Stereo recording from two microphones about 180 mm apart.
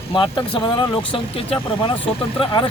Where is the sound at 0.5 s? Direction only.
30° left (ahead or behind).